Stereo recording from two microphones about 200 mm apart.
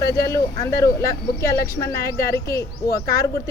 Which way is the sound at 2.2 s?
15° left (ahead or behind).